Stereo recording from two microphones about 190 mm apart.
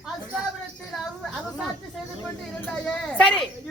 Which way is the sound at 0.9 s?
Centre (ahead or behind).